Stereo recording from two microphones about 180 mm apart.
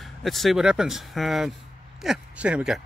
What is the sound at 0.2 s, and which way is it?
Speech, centre (ahead or behind).